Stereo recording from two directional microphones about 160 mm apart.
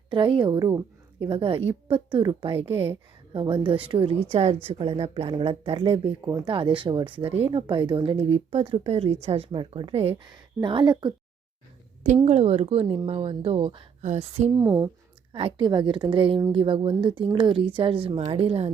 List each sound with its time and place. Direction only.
0.1 s speech: 30° right (ahead or behind)
12.0 s speech: 45° right (ahead or behind)
14.5 s speech: 20° right (ahead or behind)
15.3 s speech: 35° right (ahead or behind)